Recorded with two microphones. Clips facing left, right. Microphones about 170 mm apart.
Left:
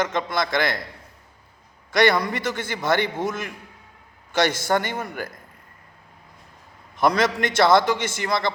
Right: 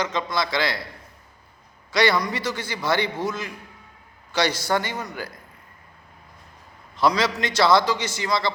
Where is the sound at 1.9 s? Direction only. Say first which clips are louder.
Left 2 dB; 50° left (ahead or behind).